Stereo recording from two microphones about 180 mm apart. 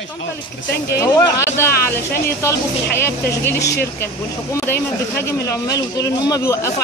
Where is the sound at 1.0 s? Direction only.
15° left (ahead or behind).